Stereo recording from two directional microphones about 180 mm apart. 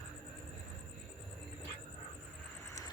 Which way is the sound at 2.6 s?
15° left (ahead or behind).